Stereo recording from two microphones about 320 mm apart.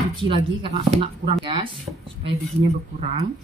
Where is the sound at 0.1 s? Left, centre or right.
Centre.